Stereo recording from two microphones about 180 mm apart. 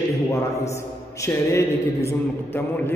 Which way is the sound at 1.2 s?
15° left (ahead or behind).